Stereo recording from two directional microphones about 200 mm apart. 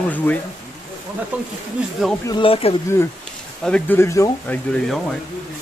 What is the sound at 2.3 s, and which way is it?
Speech, 25° left (ahead or behind).